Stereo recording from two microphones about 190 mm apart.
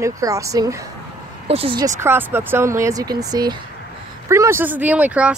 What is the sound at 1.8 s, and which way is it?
Speech, 10° right (ahead or behind).